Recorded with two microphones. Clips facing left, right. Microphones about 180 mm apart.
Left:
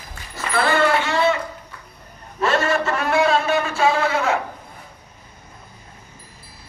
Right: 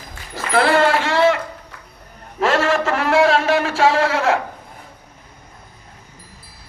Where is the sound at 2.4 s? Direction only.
90° right.